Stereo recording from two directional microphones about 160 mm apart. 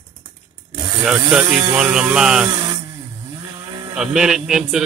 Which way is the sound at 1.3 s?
5° right (ahead or behind).